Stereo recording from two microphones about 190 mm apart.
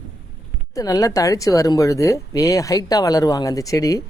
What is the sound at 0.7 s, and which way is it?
Speech, 15° left (ahead or behind).